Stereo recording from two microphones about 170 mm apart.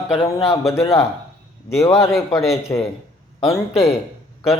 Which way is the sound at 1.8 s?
20° left (ahead or behind).